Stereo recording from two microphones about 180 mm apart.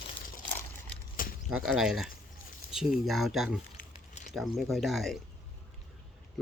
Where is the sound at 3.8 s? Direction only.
45° left (ahead or behind).